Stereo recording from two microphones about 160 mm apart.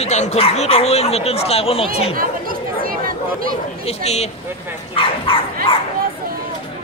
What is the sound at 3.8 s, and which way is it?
Speech, 40° left (ahead or behind).